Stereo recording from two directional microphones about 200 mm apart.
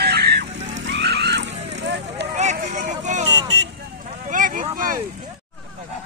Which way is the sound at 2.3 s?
40° right (ahead or behind).